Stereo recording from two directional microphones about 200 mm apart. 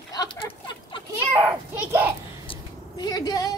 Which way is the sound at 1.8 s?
10° right (ahead or behind).